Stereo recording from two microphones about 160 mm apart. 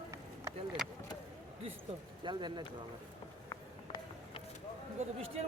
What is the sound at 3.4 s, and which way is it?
Run, 30° left (ahead or behind).